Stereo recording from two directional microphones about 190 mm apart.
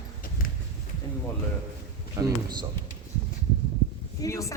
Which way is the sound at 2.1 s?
20° right (ahead or behind).